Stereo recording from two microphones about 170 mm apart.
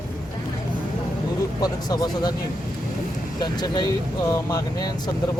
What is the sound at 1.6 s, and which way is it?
Speech, 25° left (ahead or behind).